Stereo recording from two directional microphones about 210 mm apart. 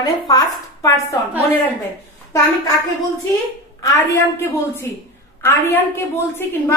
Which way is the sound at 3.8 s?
15° left (ahead or behind).